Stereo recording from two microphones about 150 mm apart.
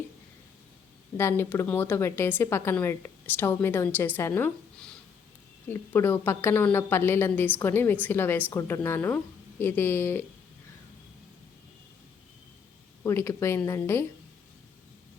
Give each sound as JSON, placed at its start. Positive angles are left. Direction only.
{"t": 1.1, "sound": "a woman's voice", "side_deg": 15}
{"t": 13.0, "sound": "a woman's voice", "side_deg": 15}